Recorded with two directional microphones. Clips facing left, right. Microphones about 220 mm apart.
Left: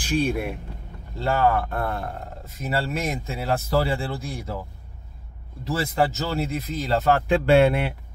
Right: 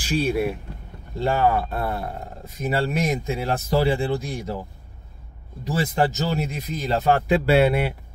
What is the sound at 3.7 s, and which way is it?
Speech, 15° right (ahead or behind).